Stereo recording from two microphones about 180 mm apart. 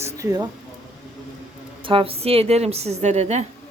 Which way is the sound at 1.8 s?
30° right (ahead or behind).